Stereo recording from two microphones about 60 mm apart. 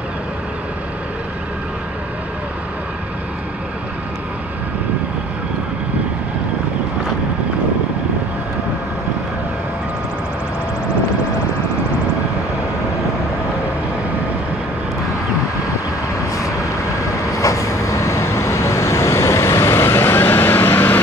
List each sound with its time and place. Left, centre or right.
17.1 s vehicle: left